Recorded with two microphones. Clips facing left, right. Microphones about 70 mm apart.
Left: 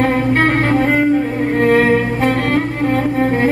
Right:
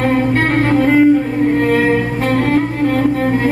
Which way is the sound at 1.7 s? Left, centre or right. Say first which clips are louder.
Left 1 dB; left.